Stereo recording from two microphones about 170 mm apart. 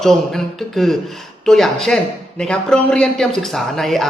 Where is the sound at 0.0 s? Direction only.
Centre (ahead or behind).